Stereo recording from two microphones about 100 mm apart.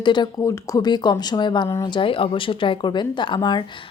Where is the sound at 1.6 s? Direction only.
30° left (ahead or behind).